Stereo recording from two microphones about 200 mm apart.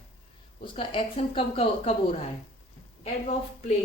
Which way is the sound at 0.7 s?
30° left (ahead or behind).